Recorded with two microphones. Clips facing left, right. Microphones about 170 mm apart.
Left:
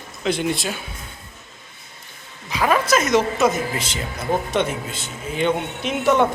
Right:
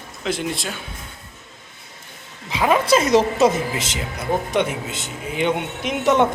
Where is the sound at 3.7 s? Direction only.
20° right (ahead or behind).